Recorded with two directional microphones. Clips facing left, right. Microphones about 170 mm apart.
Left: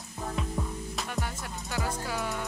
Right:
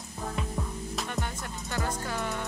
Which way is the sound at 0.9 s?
Centre (ahead or behind).